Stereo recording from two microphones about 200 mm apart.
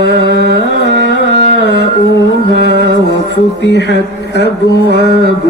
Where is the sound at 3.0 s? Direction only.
60° left (ahead or behind).